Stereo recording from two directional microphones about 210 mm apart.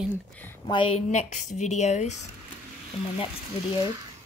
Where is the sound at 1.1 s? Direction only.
35° left (ahead or behind).